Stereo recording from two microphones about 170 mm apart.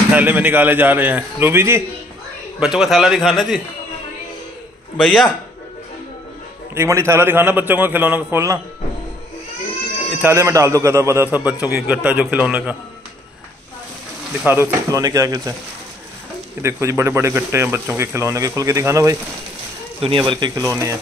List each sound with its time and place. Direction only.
0.1 s speech: 10° right (ahead or behind)
2.6 s a man's voice: 5° right (ahead or behind)
4.9 s a man's voice: centre (ahead or behind)
6.7 s speech: 15° right (ahead or behind)
10.2 s speech: 15° right (ahead or behind)
14.4 s speech: 15° right (ahead or behind)
16.6 s speech: 15° right (ahead or behind)
20.0 s speech: 30° right (ahead or behind)